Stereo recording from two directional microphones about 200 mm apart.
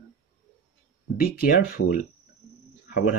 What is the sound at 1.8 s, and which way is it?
Speech, 90° left.